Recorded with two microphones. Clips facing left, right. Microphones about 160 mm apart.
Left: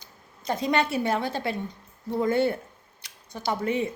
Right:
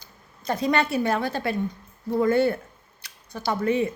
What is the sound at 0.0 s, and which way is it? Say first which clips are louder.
Speech: right 2 dB; 20° left (ahead or behind).